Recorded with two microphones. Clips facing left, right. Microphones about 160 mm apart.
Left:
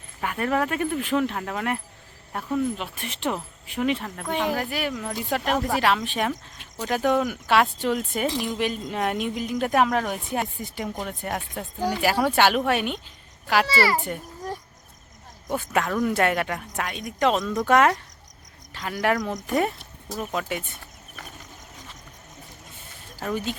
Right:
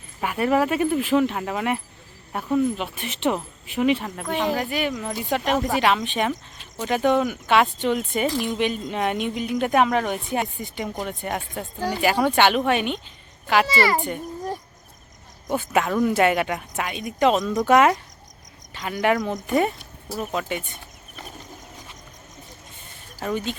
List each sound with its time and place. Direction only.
0.2 s a woman's voice: 10° right (ahead or behind)
4.9 s speech: 10° right (ahead or behind)
5.3 s a woman's voice: centre (ahead or behind)
13.7 s speech: 15° right (ahead or behind)
15.4 s a woman's voice: centre (ahead or behind)
23.2 s a woman's voice: 5° left (ahead or behind)